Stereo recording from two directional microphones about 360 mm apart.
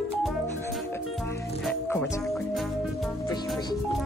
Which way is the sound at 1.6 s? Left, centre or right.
Centre.